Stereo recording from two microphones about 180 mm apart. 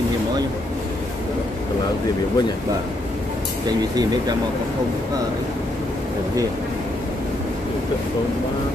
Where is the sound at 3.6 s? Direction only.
20° right (ahead or behind).